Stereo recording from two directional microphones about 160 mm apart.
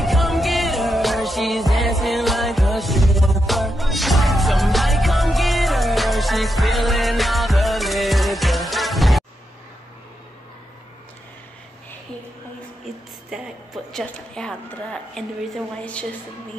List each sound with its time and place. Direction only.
0.0 s music: centre (ahead or behind)
13.3 s a woman's voice: 5° right (ahead or behind)